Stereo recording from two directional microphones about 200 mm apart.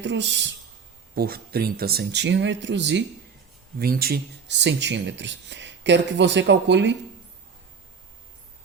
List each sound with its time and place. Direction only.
0.0 s speech: 60° right (ahead or behind)
1.1 s speech: 50° right (ahead or behind)
3.8 s speech: 50° right (ahead or behind)